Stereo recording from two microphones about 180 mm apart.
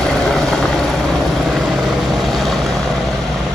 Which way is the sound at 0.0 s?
Centre (ahead or behind).